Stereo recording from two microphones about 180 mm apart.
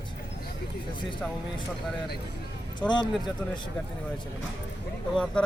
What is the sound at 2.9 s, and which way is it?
Speech, 25° left (ahead or behind).